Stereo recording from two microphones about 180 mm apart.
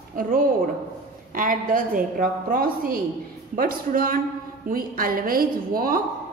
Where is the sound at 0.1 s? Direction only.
50° right (ahead or behind).